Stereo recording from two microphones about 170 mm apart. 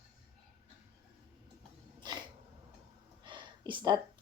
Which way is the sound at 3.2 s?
30° right (ahead or behind).